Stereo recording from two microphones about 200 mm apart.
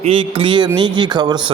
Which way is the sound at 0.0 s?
25° right (ahead or behind).